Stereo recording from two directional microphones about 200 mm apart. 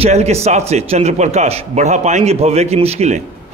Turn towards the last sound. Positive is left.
turn(degrees=-30)  # may be behind; listen again after turning